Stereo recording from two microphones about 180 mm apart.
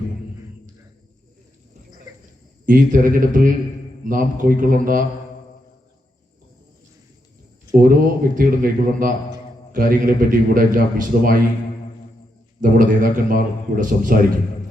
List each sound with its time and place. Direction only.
2.6 s a man's voice: 50° right (ahead or behind)
7.8 s a man's voice: 50° right (ahead or behind)
12.5 s a man's voice: 50° right (ahead or behind)